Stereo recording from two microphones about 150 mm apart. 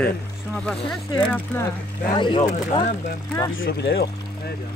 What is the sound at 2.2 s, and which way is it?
Speech, 35° left (ahead or behind).